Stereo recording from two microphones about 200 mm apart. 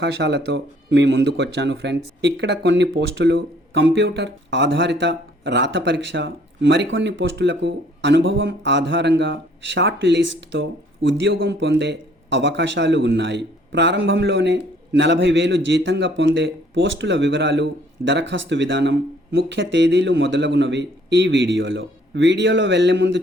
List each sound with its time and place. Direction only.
0.0 s speech: 60° right (ahead or behind)